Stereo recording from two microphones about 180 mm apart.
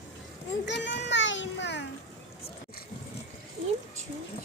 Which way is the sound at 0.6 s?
75° left (ahead or behind).